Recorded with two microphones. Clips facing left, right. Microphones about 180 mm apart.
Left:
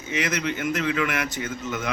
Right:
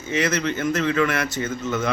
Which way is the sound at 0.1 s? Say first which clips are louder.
Right 4 dB; 15° left (ahead or behind).